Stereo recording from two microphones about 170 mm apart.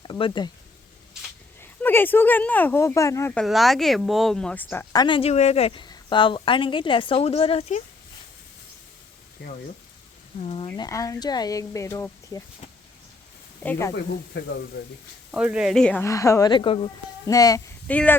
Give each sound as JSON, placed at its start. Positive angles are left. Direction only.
{"t": 0.0, "sound": "a woman's voice", "side_deg": 30}
{"t": 1.8, "sound": "speech", "side_deg": 10}
{"t": 3.3, "sound": "speech", "side_deg": 0}
{"t": 4.9, "sound": "a woman's voice", "side_deg": 30}
{"t": 10.4, "sound": "speech", "side_deg": 30}
{"t": 10.7, "sound": "a woman's voice", "side_deg": 20}
{"t": 13.6, "sound": "speech", "side_deg": 10}
{"t": 15.3, "sound": "speech", "side_deg": -5}
{"t": 16.0, "sound": "a woman's voice", "side_deg": 20}
{"t": 17.2, "sound": "a woman's voice", "side_deg": 20}
{"t": 17.8, "sound": "speech", "side_deg": 10}